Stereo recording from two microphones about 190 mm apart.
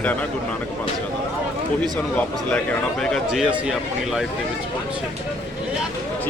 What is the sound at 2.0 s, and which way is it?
Speech, 10° left (ahead or behind).